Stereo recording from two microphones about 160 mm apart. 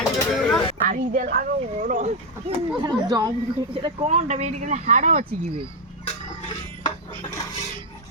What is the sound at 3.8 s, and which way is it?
Speech, 45° right (ahead or behind).